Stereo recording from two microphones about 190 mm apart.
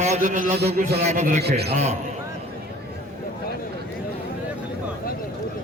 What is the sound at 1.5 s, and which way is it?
Speech, 60° right (ahead or behind).